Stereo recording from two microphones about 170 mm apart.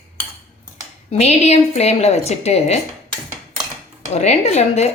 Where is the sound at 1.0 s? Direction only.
40° left (ahead or behind).